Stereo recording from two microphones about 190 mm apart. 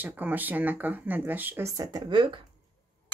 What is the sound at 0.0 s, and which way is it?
Speech, 10° right (ahead or behind).